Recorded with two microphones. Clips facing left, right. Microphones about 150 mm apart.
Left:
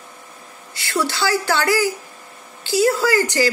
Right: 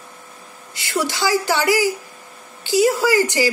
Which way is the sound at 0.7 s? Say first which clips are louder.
Even; 15° right (ahead or behind).